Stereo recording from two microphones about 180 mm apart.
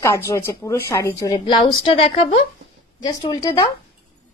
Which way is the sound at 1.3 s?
25° left (ahead or behind).